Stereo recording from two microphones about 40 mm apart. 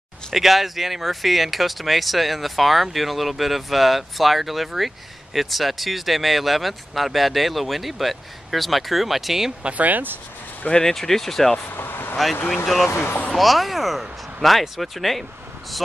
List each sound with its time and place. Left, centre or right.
0.3 s speech: centre
9.6 s speech: right
9.8 s speech: right
10.7 s speech: centre
11.7 s vehicle: left
12.6 s speech: centre
12.9 s speech: left
13.3 s speech: centre